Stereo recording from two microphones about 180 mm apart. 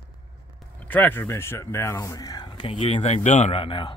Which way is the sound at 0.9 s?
10° left (ahead or behind).